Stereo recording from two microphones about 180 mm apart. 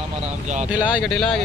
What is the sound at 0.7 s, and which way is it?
Speech, 5° right (ahead or behind).